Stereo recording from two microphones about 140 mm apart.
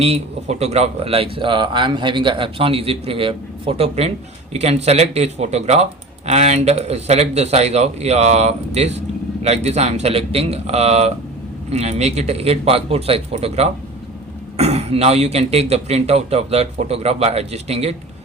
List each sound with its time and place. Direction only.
0.0 s speech: 50° right (ahead or behind)